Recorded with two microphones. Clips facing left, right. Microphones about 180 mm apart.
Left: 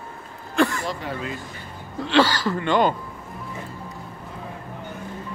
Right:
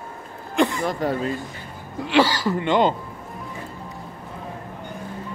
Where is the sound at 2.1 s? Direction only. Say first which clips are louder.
Even; 15° right (ahead or behind).